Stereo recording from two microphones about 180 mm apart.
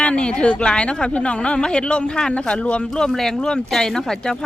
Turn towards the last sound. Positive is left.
turn(degrees=5)  # may be behind; listen again after turning